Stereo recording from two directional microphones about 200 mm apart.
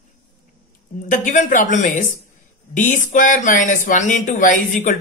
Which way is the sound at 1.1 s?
40° left (ahead or behind).